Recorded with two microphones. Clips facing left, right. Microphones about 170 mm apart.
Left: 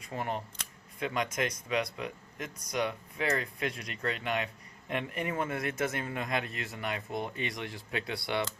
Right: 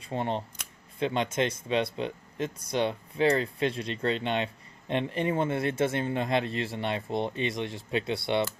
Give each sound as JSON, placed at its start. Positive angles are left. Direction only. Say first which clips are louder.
{"t": 0.0, "sound": "speech", "louder": "right 5 dB", "side_deg": -30}